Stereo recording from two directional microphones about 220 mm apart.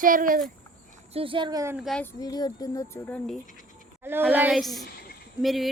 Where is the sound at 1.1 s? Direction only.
25° right (ahead or behind).